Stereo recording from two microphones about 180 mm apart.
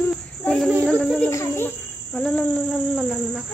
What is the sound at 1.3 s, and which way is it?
Insect, 15° left (ahead or behind).